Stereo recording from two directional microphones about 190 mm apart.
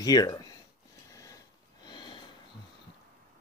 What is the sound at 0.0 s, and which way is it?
Speech, 20° left (ahead or behind).